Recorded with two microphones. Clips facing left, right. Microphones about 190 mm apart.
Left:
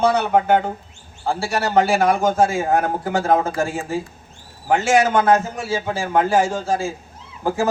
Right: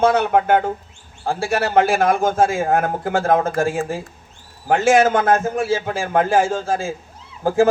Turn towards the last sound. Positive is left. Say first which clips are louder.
# right 5 dB
turn(degrees=-50)  # may be behind; listen again after turning